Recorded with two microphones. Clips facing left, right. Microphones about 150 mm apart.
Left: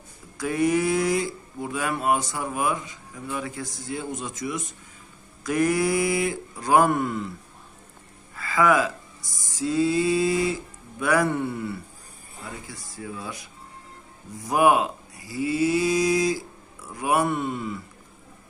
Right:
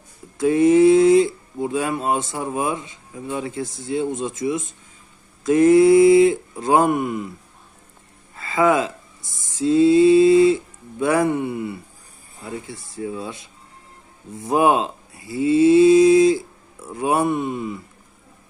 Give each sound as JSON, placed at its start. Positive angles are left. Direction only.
{"t": 0.3, "sound": "speech", "side_deg": -25}
{"t": 8.4, "sound": "speech", "side_deg": -25}